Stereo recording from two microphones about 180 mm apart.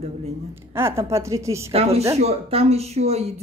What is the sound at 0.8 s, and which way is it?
Speech, 15° right (ahead or behind).